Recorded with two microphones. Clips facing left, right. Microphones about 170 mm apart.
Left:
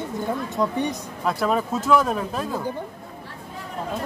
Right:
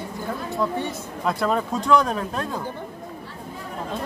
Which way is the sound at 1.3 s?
Centre (ahead or behind).